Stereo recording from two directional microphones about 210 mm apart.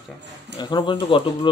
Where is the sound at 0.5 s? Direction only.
20° left (ahead or behind).